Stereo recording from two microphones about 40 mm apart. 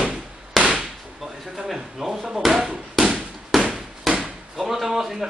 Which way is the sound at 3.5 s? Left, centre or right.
Centre.